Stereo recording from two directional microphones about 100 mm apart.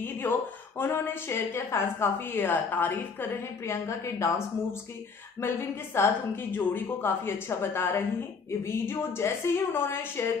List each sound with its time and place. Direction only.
0.0 s a woman's voice: 20° left (ahead or behind)
5.4 s a woman's voice: 25° left (ahead or behind)